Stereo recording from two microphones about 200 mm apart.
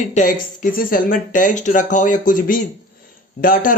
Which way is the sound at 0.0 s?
40° left (ahead or behind).